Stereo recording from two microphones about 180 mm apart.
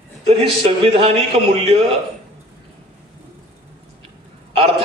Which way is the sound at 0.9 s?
35° right (ahead or behind).